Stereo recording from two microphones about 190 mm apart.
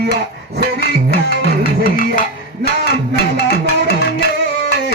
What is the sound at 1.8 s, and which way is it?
Music, 45° left (ahead or behind).